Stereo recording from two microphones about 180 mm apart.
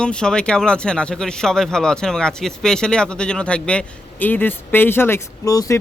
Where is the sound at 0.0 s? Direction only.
5° left (ahead or behind).